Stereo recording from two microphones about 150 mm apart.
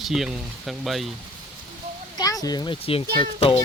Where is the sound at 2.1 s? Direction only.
25° left (ahead or behind); by 3.6 s 40° left (ahead or behind).